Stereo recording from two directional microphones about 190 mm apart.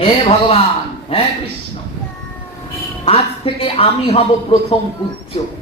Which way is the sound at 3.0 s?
30° left (ahead or behind).